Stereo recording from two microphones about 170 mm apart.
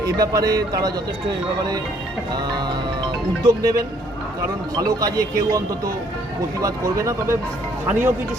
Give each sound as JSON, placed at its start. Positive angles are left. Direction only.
{"t": 0.3, "sound": "speech", "side_deg": -20}
{"t": 2.3, "sound": "speech", "side_deg": -25}